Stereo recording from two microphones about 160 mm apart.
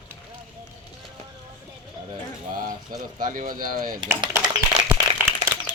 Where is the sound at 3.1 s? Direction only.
60° right (ahead or behind).